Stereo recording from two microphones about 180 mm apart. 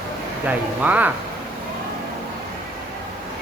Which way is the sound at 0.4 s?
10° right (ahead or behind).